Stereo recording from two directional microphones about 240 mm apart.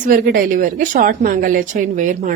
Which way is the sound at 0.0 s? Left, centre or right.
Right.